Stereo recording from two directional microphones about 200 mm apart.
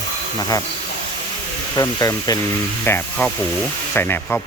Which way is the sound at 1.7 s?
20° left (ahead or behind).